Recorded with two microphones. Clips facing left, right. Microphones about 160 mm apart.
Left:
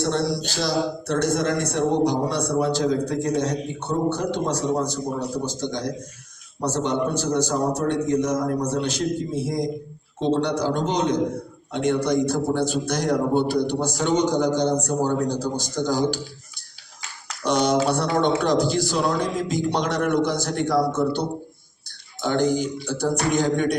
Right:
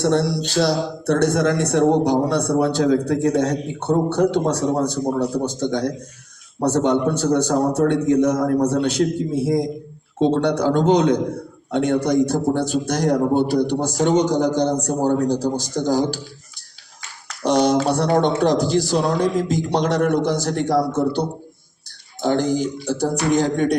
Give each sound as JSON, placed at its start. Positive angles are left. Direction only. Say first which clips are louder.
{"t": 0.0, "sound": "a man's voice", "louder": "right 4 dB", "side_deg": -60}
{"t": 17.4, "sound": "speech", "louder": "right 3 dB", "side_deg": -40}